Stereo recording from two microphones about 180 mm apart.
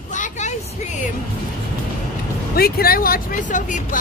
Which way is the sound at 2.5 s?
55° left (ahead or behind).